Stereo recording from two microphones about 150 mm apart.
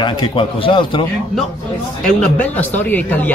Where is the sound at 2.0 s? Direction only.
10° left (ahead or behind).